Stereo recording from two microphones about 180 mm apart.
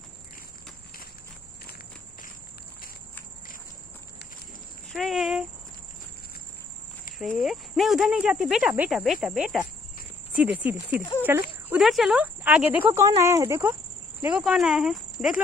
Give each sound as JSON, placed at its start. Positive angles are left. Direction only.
{"t": 4.8, "sound": "a sound", "side_deg": 0}
{"t": 7.2, "sound": "speech", "side_deg": 0}
{"t": 11.7, "sound": "speech", "side_deg": 0}
{"t": 14.2, "sound": "speech", "side_deg": -5}